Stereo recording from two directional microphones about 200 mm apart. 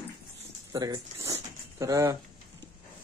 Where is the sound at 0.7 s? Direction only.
20° right (ahead or behind).